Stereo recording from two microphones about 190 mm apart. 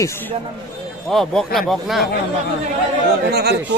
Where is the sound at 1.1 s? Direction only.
Centre (ahead or behind).